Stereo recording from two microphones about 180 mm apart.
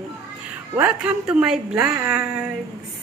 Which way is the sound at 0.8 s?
10° right (ahead or behind).